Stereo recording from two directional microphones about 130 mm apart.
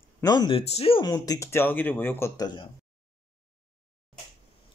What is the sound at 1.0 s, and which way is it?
Speech, 30° left (ahead or behind).